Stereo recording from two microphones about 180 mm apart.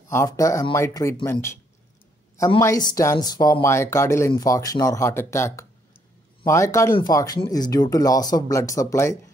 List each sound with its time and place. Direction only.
0.1 s speech: 15° left (ahead or behind)
2.6 s speech: 20° left (ahead or behind)